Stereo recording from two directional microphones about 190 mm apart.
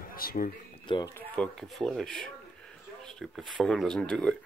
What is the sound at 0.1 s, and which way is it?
Speech, 50° left (ahead or behind).